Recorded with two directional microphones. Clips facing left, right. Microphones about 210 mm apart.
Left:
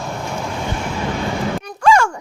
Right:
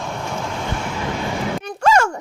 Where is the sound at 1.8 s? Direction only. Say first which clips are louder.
Left 2 dB; 40° right (ahead or behind).